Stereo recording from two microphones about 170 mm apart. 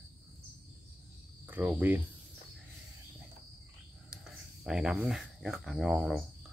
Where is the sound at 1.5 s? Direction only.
10° right (ahead or behind).